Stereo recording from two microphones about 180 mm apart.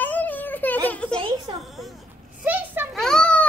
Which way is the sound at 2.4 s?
10° right (ahead or behind).